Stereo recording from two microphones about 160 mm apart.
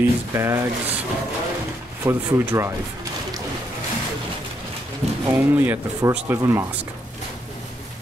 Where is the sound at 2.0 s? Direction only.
15° right (ahead or behind).